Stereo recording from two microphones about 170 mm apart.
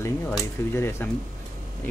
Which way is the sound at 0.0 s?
15° left (ahead or behind).